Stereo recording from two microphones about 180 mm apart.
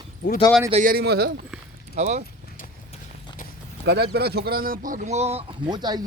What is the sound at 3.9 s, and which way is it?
A man's voice, 65° right (ahead or behind).